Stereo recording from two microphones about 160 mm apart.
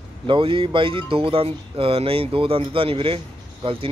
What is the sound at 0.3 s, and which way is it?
Speech, 35° right (ahead or behind).